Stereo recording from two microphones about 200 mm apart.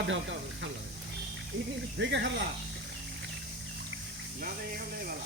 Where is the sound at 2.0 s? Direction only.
60° right (ahead or behind).